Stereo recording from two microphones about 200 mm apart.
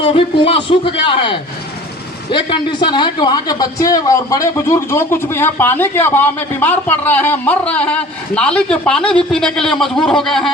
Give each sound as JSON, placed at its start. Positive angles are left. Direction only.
{"t": 0.0, "sound": "a man's voice", "side_deg": 25}